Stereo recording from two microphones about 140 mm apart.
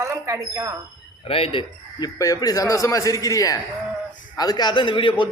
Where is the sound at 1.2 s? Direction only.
40° left (ahead or behind).